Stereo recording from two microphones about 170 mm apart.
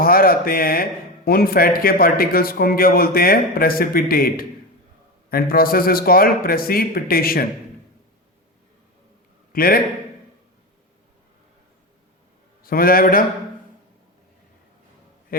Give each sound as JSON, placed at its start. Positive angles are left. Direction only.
{"t": 0.0, "sound": "a man's voice", "side_deg": 60}
{"t": 9.5, "sound": "a man's voice", "side_deg": 60}
{"t": 12.6, "sound": "a man's voice", "side_deg": 60}
{"t": 15.3, "sound": "a sound", "side_deg": 60}